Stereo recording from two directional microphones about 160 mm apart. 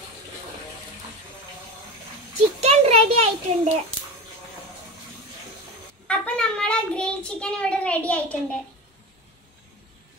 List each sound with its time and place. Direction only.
2.3 s a child's voice: 40° right (ahead or behind)
6.0 s a child's voice: 5° left (ahead or behind)